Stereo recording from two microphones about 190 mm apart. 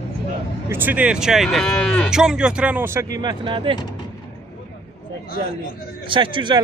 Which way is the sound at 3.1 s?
25° right (ahead or behind).